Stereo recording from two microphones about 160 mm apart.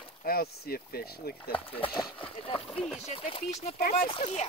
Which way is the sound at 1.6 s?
35° left (ahead or behind).